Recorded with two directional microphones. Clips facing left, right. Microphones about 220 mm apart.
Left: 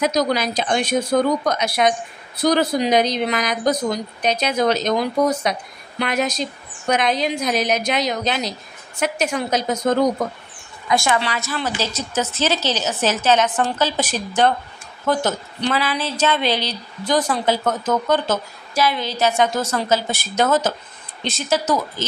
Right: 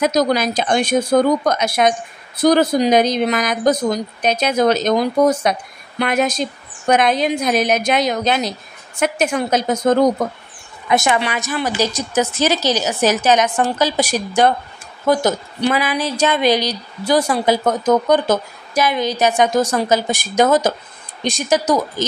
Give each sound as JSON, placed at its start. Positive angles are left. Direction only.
{"t": 0.0, "sound": "speech", "side_deg": -45}
{"t": 10.9, "sound": "speech", "side_deg": -20}